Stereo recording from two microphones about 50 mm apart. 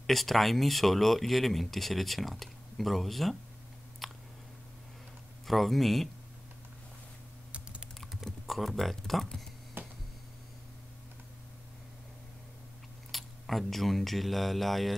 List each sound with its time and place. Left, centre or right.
0.0 s speech: centre
4.0 s a sound: centre
5.5 s speech: centre
7.5 s typing: right
8.0 s typing: centre
8.3 s speech: centre
9.8 s a sound: right
13.1 s speech: centre